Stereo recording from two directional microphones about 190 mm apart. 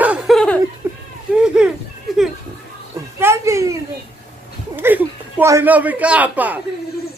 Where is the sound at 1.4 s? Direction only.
5° right (ahead or behind).